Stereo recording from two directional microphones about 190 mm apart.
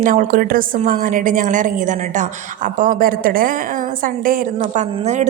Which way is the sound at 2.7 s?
45° right (ahead or behind).